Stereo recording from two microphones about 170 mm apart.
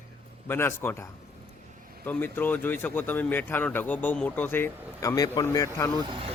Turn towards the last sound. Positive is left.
turn(degrees=-30)  # may be behind; listen again after turning